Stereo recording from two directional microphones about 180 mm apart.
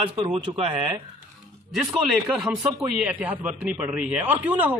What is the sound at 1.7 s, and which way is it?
A man's voice, 5° right (ahead or behind).